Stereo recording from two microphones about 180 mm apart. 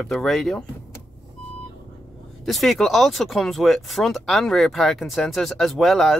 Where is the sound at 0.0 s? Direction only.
Centre (ahead or behind).